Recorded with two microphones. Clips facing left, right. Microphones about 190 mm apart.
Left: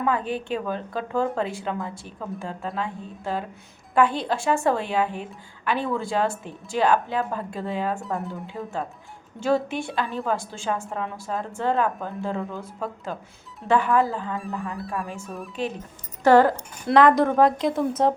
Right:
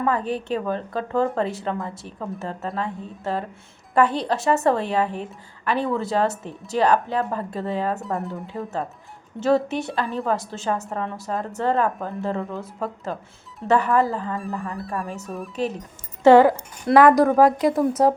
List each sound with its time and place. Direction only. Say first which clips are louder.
0.0 s a woman's voice: right 2 dB; centre (ahead or behind)
16.2 s speech: right 4 dB; 20° right (ahead or behind)
16.5 s a woman's voice: right 4 dB; 5° right (ahead or behind)